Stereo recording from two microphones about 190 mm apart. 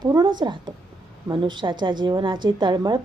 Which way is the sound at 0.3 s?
25° right (ahead or behind).